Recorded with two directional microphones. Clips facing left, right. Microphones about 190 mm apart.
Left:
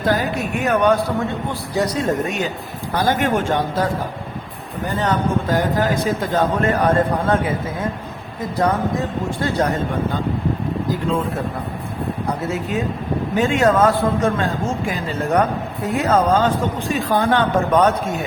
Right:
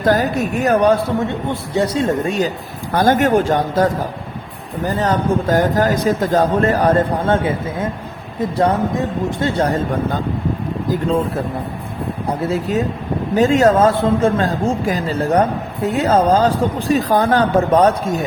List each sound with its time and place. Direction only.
0.0 s a man's voice: 45° right (ahead or behind)
2.9 s speech: 50° right (ahead or behind)
4.9 s a man's voice: 35° right (ahead or behind)
9.4 s a man's voice: 30° right (ahead or behind)
12.4 s a man's voice: 35° right (ahead or behind)